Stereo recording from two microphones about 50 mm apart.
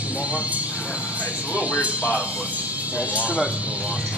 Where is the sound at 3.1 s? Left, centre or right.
Right.